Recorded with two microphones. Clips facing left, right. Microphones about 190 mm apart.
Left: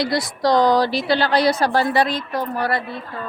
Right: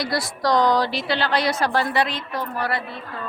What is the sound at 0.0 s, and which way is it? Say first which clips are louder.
A woman's voice: left 4 dB; 25° left (ahead or behind).